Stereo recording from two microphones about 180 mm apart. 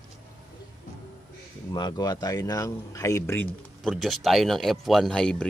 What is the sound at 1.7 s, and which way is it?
Speech, 25° left (ahead or behind).